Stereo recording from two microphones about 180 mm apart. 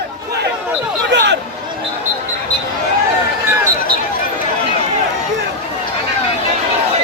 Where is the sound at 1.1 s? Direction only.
75° right (ahead or behind).